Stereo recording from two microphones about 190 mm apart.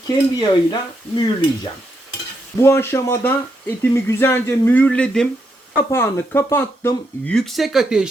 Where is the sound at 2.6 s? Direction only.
15° left (ahead or behind); by 8.1 s 5° right (ahead or behind).